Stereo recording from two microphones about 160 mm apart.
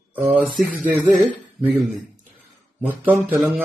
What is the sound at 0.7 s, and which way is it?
Speech, 50° right (ahead or behind).